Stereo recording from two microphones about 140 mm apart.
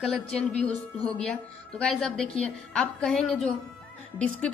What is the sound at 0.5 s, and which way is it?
Speech, 50° left (ahead or behind).